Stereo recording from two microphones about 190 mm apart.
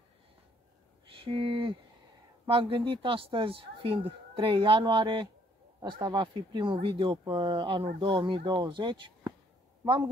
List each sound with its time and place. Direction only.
1.2 s a woman's voice: 25° right (ahead or behind)